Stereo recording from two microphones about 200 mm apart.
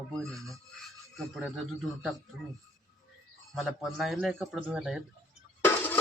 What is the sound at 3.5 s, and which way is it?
Speech, centre (ahead or behind).